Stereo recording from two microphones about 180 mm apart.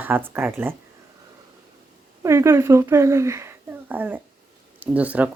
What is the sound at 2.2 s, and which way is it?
Speech, 15° right (ahead or behind).